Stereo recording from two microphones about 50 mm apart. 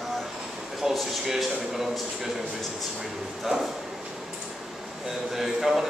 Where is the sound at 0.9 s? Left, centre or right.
Centre.